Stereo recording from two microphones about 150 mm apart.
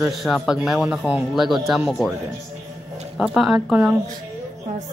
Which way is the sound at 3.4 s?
5° right (ahead or behind).